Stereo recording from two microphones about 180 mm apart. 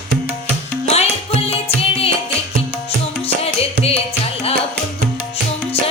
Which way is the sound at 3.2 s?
35° left (ahead or behind).